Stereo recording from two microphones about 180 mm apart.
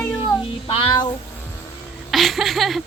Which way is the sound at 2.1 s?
Centre (ahead or behind).